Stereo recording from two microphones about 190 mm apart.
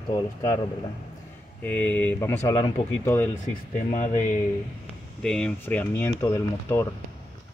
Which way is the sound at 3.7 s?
45° left (ahead or behind).